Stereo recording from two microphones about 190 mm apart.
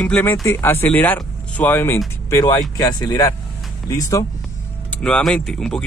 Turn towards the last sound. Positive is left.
turn(degrees=5)  # may be behind; listen again after turning